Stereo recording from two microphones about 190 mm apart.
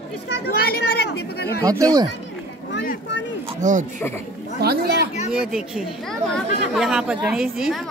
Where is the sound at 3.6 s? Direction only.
40° right (ahead or behind).